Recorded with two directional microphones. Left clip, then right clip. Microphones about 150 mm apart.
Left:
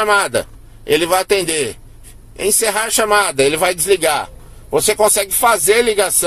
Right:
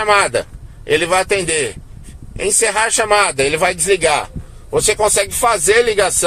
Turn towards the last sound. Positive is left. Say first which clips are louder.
# right 1 dB
turn(degrees=40)  # may be behind; listen again after turning